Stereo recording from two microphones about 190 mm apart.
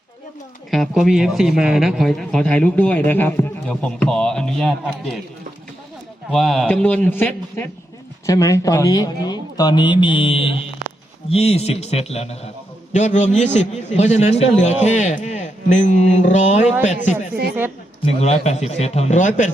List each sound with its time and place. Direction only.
0.7 s a man's voice: centre (ahead or behind)
6.3 s a man's voice: centre (ahead or behind); by 16.6 s 40° left (ahead or behind)
18.0 s a man's voice: 35° left (ahead or behind)